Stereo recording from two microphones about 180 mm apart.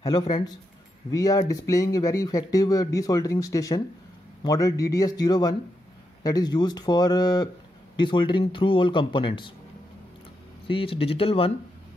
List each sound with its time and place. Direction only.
1.1 s speech: 20° left (ahead or behind)
10.7 s speech: 30° left (ahead or behind)